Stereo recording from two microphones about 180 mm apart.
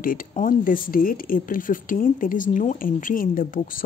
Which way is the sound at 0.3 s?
50° left (ahead or behind).